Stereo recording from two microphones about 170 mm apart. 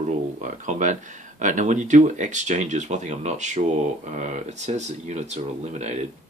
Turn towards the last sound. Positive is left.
turn(degrees=-40)  # may be behind; listen again after turning